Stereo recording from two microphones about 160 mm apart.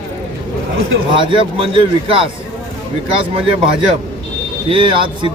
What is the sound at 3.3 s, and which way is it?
Speech, 35° right (ahead or behind).